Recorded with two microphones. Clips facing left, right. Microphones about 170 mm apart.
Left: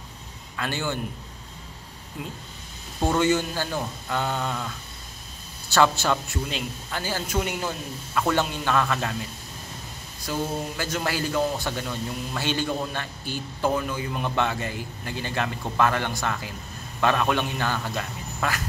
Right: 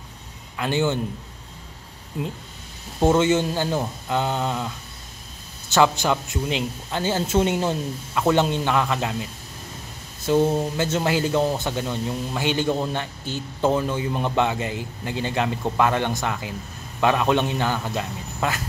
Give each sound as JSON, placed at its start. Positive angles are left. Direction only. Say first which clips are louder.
{"t": 0.6, "sound": "a man's voice", "louder": "right 7 dB", "side_deg": -20}
{"t": 3.0, "sound": "a man's voice", "louder": "right 4 dB", "side_deg": -20}
{"t": 10.2, "sound": "a man's voice", "louder": "right 9 dB", "side_deg": -25}